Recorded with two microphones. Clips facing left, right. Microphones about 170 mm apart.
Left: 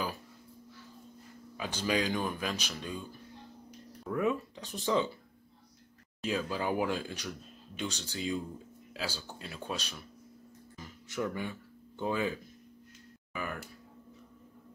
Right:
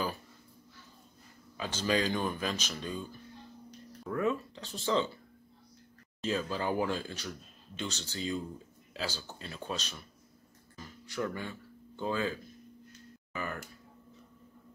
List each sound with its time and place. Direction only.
1.6 s speech: 10° left (ahead or behind)
4.2 s speech: 15° left (ahead or behind)
6.2 s speech: 5° left (ahead or behind)
11.1 s speech: 15° left (ahead or behind)